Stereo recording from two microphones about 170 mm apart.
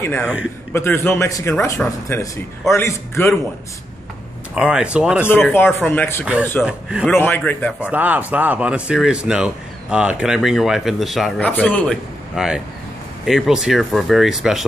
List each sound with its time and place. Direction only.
0.0 s a man's voice: 10° left (ahead or behind)
4.6 s speech: 5° right (ahead or behind)
5.5 s a man's voice: 10° left (ahead or behind)
6.6 s speech: 5° right (ahead or behind)
7.1 s a man's voice: 10° left (ahead or behind)
7.8 s a man's voice: 10° right (ahead or behind)